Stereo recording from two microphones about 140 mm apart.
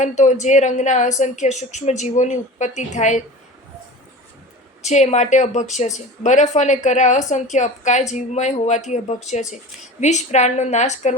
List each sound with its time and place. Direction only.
0.0 s a woman's voice: 55° left (ahead or behind)
4.8 s a woman's voice: 55° left (ahead or behind)